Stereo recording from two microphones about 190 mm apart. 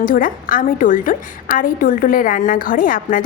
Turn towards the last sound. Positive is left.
turn(degrees=45)  # may be behind; listen again after turning